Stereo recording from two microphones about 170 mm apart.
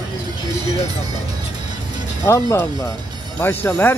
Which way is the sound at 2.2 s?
15° left (ahead or behind).